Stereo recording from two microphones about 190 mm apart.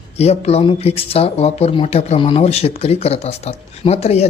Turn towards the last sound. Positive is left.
turn(degrees=35)  # may be behind; listen again after turning